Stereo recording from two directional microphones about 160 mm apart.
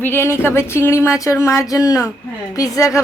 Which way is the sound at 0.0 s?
15° left (ahead or behind).